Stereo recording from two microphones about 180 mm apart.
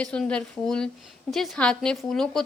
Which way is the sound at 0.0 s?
5° left (ahead or behind).